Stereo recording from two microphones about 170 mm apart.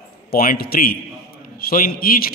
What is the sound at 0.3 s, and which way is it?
A man's voice, 60° left (ahead or behind).